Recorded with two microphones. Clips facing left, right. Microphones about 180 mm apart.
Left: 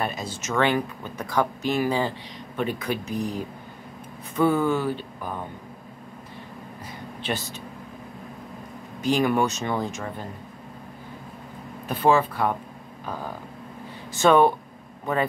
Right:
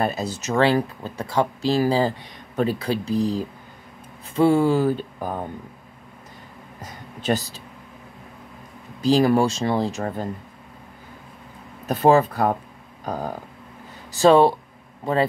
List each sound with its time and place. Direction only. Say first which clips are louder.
0.0 s speech: right 5 dB; 40° right (ahead or behind)
7.2 s speech: right 7 dB; 40° right (ahead or behind)
9.0 s speech: right 4 dB; 35° right (ahead or behind)
11.9 s speech: right 4 dB; 40° right (ahead or behind)
13.0 s a sound: right 5 dB; 45° right (ahead or behind)
14.1 s speech: right 3 dB; 30° right (ahead or behind)